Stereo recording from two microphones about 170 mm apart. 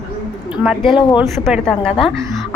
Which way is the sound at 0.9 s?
25° left (ahead or behind).